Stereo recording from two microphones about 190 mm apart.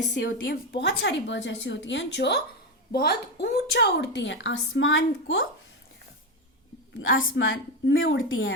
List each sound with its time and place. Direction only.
0.1 s a woman's voice: 55° left (ahead or behind); by 5.4 s 85° left
7.3 s a woman's voice: 90° left